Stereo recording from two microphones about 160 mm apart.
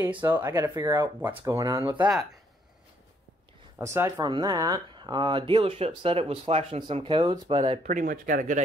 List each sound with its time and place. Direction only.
0.3 s speech: 15° right (ahead or behind)
3.7 s speech: 15° right (ahead or behind); by 7.8 s 35° right (ahead or behind)
7.8 s speech: 55° right (ahead or behind)